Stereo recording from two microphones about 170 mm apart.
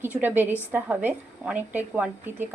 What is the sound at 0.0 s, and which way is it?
A woman's voice, 10° right (ahead or behind).